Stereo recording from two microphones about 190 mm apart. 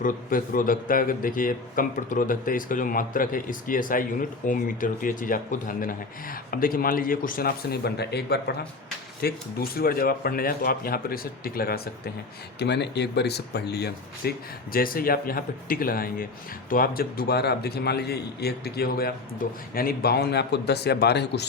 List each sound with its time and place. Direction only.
0.0 s speech: 45° left (ahead or behind)
12.5 s a man's voice: 60° left (ahead or behind)